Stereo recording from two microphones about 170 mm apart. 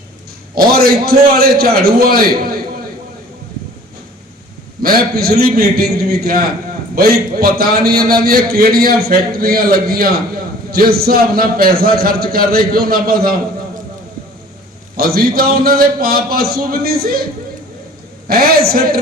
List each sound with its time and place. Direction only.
0.5 s a man's voice: 65° right (ahead or behind)
4.8 s a man's voice: 60° right (ahead or behind)
14.9 s a man's voice: 60° right (ahead or behind)
18.3 s a man's voice: 60° right (ahead or behind)